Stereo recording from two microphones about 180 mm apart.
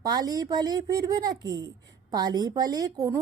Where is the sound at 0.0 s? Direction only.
20° right (ahead or behind).